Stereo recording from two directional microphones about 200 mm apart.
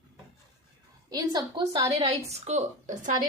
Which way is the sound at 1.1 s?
20° right (ahead or behind).